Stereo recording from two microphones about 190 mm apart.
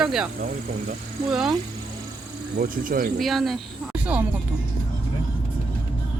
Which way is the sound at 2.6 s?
50° right (ahead or behind).